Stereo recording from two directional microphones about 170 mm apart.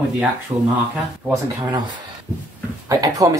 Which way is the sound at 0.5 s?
30° right (ahead or behind).